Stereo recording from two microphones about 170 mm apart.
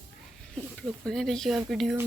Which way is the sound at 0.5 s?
5° left (ahead or behind).